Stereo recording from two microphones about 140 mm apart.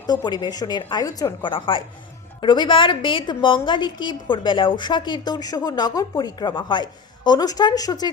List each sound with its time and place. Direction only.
0.3 s a woman's voice: 30° left (ahead or behind)